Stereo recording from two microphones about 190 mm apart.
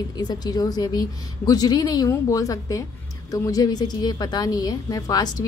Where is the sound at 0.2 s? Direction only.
20° left (ahead or behind).